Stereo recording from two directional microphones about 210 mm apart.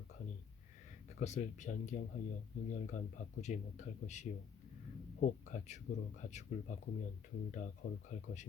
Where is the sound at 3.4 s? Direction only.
35° left (ahead or behind).